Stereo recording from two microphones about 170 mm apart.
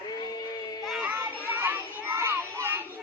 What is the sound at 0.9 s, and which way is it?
Children playing, 5° right (ahead or behind).